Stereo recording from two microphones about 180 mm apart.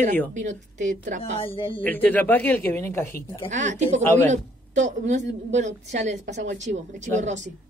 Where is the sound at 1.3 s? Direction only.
30° left (ahead or behind).